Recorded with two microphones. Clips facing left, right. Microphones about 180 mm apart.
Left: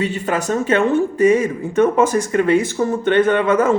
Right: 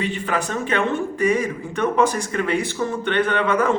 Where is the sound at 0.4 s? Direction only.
40° left (ahead or behind).